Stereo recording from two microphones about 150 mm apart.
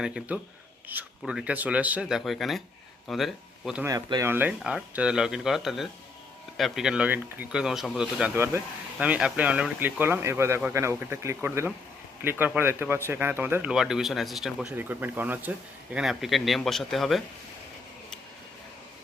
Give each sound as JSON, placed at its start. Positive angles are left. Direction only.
{"t": 0.0, "sound": "speech", "side_deg": -5}
{"t": 3.8, "sound": "speech", "side_deg": -20}
{"t": 14.8, "sound": "speech", "side_deg": -15}